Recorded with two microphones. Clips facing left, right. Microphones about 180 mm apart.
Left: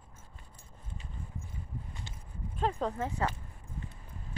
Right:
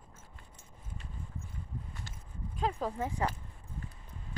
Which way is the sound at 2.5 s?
5° right (ahead or behind).